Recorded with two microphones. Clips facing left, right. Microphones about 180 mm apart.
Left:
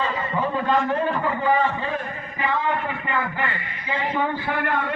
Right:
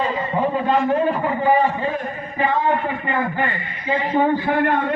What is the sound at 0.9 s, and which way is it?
Speech, 25° right (ahead or behind).